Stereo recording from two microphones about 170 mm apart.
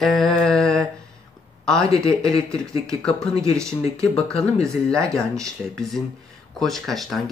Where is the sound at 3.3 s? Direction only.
20° right (ahead or behind).